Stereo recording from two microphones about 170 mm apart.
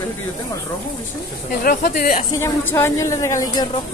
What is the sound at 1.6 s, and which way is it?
Speech, 55° left (ahead or behind).